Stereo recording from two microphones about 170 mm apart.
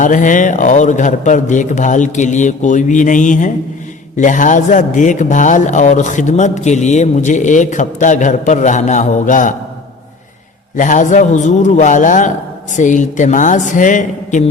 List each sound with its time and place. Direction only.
0.0 s a man's voice: 50° left (ahead or behind)
10.8 s a man's voice: 50° left (ahead or behind)